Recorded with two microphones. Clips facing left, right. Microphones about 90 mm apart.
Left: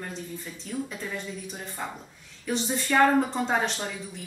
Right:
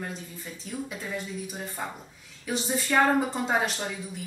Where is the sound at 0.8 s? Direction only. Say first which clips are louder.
Even; 5° right (ahead or behind).